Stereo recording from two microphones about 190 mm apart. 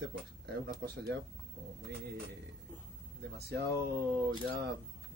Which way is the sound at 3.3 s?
60° right (ahead or behind).